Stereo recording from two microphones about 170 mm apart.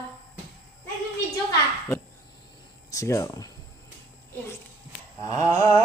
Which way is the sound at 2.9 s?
20° left (ahead or behind).